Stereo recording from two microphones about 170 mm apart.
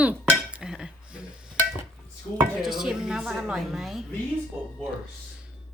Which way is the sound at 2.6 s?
Centre (ahead or behind).